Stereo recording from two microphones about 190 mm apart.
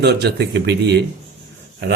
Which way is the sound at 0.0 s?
60° right (ahead or behind).